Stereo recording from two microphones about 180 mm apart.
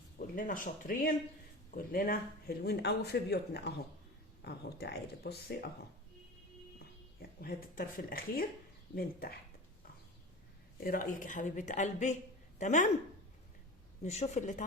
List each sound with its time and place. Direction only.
0.2 s speech: 50° left (ahead or behind)
7.2 s speech: 55° left (ahead or behind)
10.8 s a woman's voice: 55° left (ahead or behind)
14.0 s a woman's voice: 40° left (ahead or behind)